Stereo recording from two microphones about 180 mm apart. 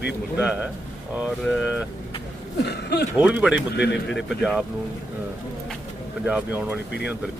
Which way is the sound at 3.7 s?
75° left (ahead or behind).